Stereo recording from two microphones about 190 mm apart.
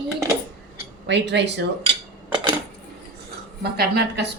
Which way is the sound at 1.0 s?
65° right (ahead or behind).